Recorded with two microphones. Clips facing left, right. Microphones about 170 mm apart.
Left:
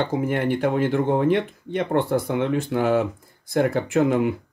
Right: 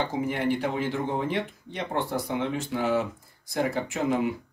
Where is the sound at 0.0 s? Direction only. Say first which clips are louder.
Left 4 dB; 55° left (ahead or behind).